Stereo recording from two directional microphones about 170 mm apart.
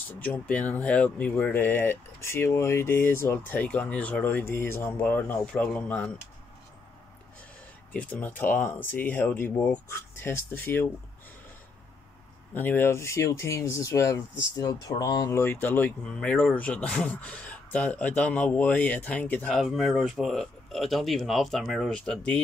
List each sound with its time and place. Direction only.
0.2 s speech: 10° left (ahead or behind)
7.9 s speech: 10° left (ahead or behind)
12.5 s speech: 10° left (ahead or behind)